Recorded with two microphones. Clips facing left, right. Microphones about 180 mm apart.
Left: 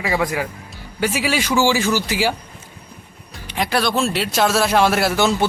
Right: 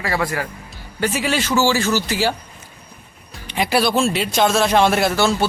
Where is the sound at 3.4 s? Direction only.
5° right (ahead or behind).